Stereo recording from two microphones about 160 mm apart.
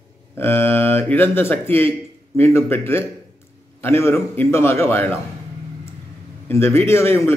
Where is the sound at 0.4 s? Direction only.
15° left (ahead or behind).